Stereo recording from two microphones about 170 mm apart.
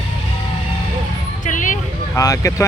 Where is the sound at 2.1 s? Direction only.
20° left (ahead or behind).